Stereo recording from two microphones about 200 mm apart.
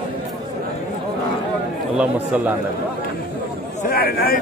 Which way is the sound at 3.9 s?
50° left (ahead or behind).